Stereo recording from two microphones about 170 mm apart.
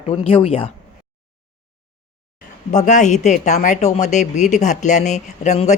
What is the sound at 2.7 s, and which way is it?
Speech, 45° left (ahead or behind).